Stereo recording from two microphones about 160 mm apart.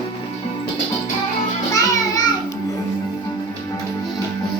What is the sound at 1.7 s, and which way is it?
Music, 25° left (ahead or behind).